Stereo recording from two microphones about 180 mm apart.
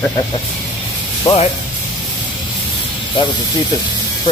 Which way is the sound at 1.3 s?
20° left (ahead or behind).